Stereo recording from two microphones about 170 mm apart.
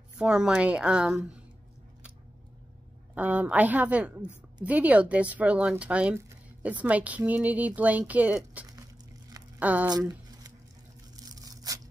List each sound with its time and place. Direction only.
0.2 s a woman's voice: 5° right (ahead or behind)
3.2 s speech: 10° right (ahead or behind)
9.8 s a sound: 20° right (ahead or behind)
11.1 s tearing: 20° right (ahead or behind)